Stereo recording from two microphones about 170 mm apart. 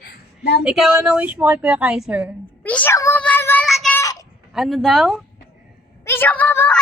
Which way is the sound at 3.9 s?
20° left (ahead or behind).